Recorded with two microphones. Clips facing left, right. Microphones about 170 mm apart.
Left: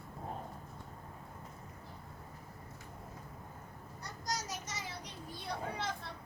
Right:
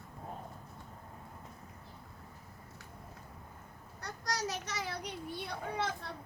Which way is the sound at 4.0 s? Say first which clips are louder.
Right 3 dB; 70° right (ahead or behind).